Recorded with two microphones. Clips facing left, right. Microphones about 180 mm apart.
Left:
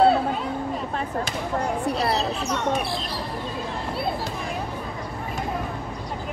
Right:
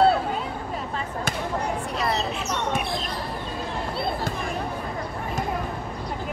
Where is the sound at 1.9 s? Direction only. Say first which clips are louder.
Left 4 dB; 35° left (ahead or behind).